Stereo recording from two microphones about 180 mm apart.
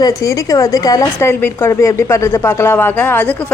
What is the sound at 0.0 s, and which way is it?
A woman's voice, 20° left (ahead or behind).